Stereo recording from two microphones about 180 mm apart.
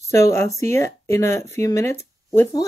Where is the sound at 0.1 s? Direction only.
15° left (ahead or behind).